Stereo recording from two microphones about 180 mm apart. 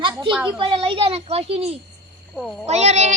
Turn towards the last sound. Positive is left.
turn(degrees=-40)  # may be behind; listen again after turning